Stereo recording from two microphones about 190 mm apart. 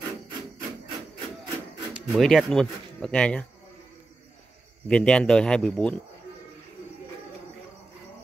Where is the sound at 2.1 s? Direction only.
Centre (ahead or behind).